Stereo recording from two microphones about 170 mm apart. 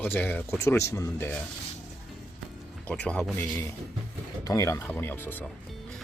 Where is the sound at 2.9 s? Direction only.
5° left (ahead or behind).